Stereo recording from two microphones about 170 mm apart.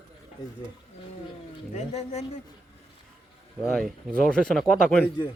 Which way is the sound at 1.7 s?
40° left (ahead or behind).